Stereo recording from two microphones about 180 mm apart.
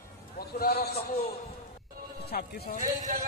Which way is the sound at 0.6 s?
55° left (ahead or behind).